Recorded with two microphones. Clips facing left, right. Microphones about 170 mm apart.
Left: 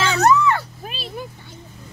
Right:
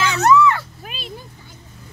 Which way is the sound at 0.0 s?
35° left (ahead or behind).